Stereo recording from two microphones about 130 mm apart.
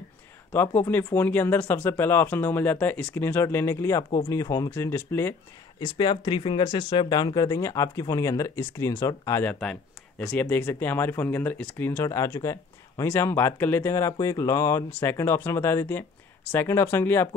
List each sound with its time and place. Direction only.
0.5 s speech: 15° left (ahead or behind)
5.8 s speech: 35° left (ahead or behind)
9.4 s speech: 5° left (ahead or behind)